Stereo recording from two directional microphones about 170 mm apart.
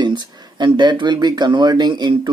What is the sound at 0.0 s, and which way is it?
Speech, 25° right (ahead or behind).